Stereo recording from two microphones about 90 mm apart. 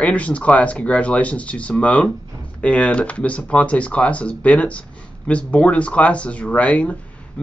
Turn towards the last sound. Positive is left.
turn(degrees=10)  # may be behind; listen again after turning